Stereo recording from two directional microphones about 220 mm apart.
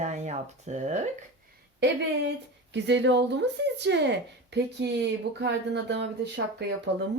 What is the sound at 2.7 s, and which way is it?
A woman's voice, 50° right (ahead or behind).